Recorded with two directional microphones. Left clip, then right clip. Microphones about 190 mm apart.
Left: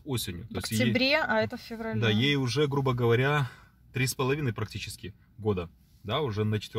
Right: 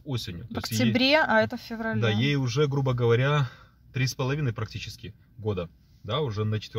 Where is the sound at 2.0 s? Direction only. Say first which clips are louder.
Left 2 dB; 30° left (ahead or behind).